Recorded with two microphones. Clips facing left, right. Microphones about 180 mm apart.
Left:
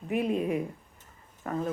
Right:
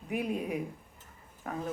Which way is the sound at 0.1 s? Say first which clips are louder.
Left 5 dB; 70° left (ahead or behind).